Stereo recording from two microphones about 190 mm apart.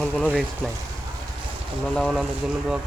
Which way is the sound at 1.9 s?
5° left (ahead or behind).